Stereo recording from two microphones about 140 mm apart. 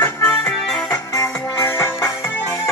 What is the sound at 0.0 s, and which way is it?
Music, 15° left (ahead or behind).